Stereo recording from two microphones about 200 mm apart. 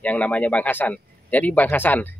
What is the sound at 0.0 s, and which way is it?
A man's voice, 5° left (ahead or behind).